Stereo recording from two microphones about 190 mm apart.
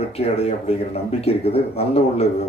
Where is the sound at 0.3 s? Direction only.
30° left (ahead or behind).